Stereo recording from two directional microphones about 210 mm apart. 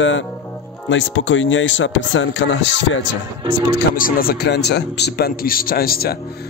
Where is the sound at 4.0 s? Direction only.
45° left (ahead or behind).